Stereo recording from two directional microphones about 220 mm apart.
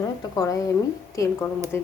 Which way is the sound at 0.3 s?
15° left (ahead or behind).